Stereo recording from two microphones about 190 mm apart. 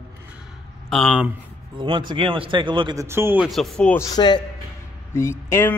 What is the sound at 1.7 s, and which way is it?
Speech, 25° right (ahead or behind).